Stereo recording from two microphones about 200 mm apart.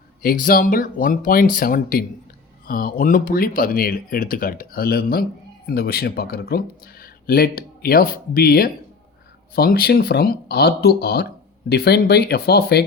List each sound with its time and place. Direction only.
0.2 s speech: 45° left (ahead or behind)